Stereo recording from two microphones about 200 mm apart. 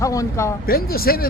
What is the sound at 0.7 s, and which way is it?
Speech, 50° left (ahead or behind).